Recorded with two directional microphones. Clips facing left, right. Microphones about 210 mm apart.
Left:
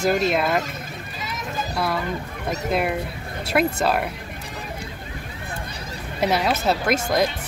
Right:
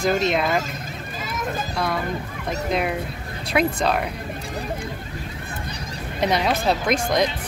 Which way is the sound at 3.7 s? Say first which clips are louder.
Even; 5° left (ahead or behind).